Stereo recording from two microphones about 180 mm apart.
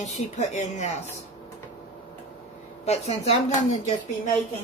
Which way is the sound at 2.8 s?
35° left (ahead or behind).